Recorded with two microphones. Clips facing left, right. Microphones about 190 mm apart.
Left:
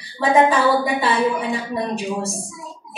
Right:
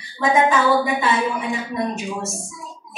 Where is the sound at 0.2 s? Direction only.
35° left (ahead or behind).